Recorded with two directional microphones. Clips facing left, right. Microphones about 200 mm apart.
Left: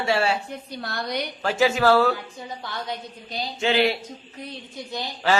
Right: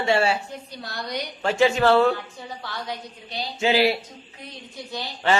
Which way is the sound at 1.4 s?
5° left (ahead or behind).